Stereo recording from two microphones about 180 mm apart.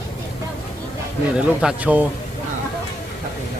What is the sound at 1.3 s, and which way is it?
Speech, 5° right (ahead or behind).